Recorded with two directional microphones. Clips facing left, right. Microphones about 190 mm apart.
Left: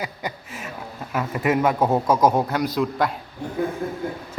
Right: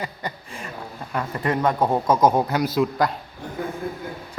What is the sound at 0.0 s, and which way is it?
A man's voice, 5° left (ahead or behind).